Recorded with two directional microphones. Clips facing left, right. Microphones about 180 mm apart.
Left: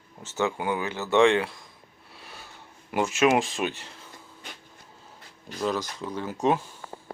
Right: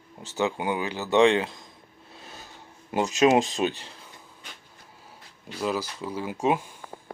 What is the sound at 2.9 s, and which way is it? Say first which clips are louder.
Speech: right 2 dB; 20° right (ahead or behind).